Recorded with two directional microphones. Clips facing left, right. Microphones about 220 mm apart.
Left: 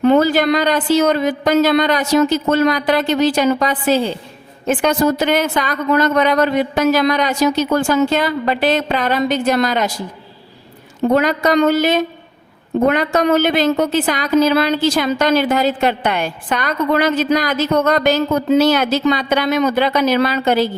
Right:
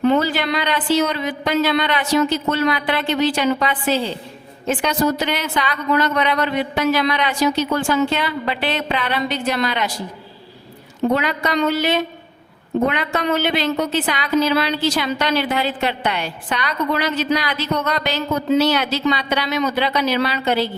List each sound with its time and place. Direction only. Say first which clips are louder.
0.0 s a woman's voice: left 5 dB; 50° left (ahead or behind)
11.1 s a woman's voice: left 8 dB; 45° left (ahead or behind)